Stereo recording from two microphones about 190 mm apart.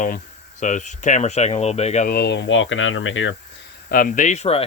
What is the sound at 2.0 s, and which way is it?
Speech, 60° left (ahead or behind).